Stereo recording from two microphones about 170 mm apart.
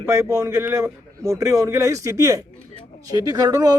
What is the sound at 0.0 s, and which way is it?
Speech, 15° right (ahead or behind).